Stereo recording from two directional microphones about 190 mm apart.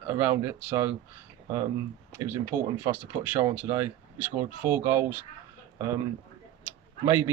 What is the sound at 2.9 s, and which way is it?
Speech, 5° right (ahead or behind).